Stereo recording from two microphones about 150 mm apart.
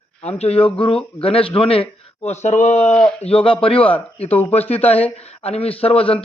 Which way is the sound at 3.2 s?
40° left (ahead or behind).